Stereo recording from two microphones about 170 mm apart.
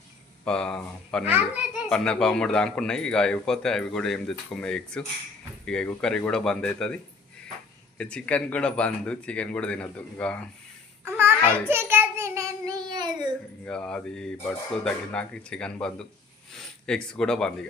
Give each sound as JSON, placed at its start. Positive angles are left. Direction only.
{"t": 0.4, "sound": "speech", "side_deg": 5}
{"t": 1.2, "sound": "a child's voice", "side_deg": -10}
{"t": 1.9, "sound": "speech", "side_deg": 5}
{"t": 11.0, "sound": "a sound", "side_deg": -15}
{"t": 11.7, "sound": "child singing", "side_deg": -15}
{"t": 13.7, "sound": "speech", "side_deg": 5}